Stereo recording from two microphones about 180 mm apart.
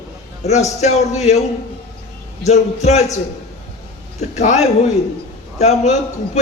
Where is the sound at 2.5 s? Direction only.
40° left (ahead or behind).